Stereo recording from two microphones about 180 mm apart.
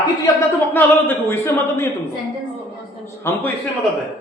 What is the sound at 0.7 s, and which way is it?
A man's voice, 10° left (ahead or behind).